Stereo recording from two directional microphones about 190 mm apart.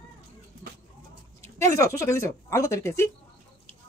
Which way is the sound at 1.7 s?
15° left (ahead or behind).